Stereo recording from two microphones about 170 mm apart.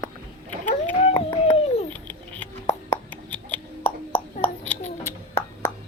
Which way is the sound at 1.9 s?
10° left (ahead or behind).